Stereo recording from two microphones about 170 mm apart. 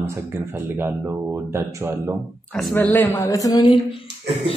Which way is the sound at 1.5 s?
15° right (ahead or behind).